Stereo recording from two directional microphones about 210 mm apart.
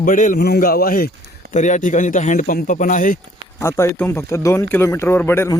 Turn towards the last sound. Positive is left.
turn(degrees=10)  # may be behind; listen again after turning